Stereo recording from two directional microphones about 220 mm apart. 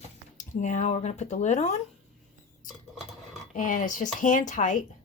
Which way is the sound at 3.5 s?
35° left (ahead or behind).